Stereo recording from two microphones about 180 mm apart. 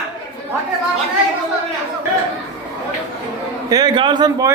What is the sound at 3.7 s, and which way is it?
Speech, 20° right (ahead or behind).